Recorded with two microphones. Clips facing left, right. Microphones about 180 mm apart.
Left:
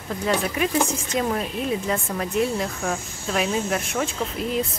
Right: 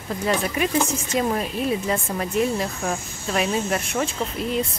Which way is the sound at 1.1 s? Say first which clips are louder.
Right 1 dB; centre (ahead or behind).